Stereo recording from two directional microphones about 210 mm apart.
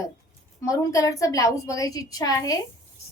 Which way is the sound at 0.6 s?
15° left (ahead or behind).